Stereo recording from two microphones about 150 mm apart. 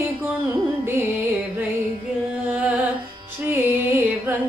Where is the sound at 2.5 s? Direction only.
10° right (ahead or behind).